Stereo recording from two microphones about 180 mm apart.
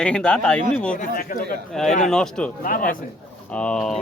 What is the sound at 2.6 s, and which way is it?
Speech, 50° left (ahead or behind).